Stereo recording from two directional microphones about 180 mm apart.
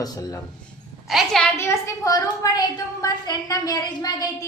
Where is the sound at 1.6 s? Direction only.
15° left (ahead or behind).